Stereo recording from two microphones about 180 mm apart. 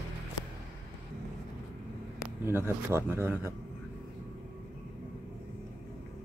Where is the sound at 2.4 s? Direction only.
15° right (ahead or behind).